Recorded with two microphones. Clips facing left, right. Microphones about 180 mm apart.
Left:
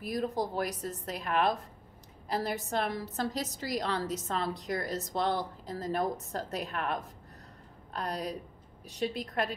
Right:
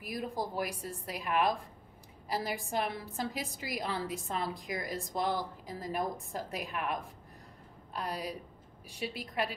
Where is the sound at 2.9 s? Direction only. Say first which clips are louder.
Left 4 dB; 40° left (ahead or behind).